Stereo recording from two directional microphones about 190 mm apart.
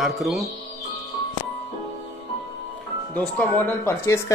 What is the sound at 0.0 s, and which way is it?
Speech, centre (ahead or behind).